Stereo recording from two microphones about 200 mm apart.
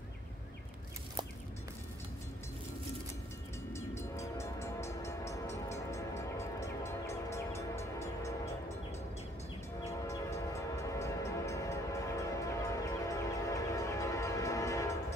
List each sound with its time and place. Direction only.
3.7 s train: 15° left (ahead or behind)
9.8 s train: 15° left (ahead or behind)